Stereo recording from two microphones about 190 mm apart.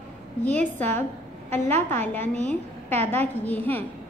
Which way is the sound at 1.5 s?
10° left (ahead or behind).